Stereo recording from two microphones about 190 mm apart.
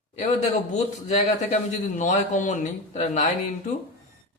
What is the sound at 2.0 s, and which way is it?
Speech, 40° left (ahead or behind).